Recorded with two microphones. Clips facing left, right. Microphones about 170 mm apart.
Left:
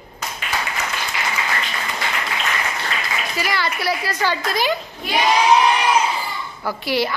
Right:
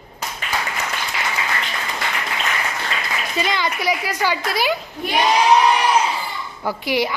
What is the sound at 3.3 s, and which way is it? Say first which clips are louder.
A woman's voice: right 2 dB; 20° right (ahead or behind).